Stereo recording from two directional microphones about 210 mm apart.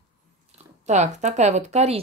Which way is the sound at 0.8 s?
35° right (ahead or behind).